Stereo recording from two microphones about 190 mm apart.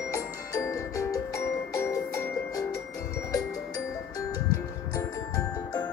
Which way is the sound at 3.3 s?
20° left (ahead or behind).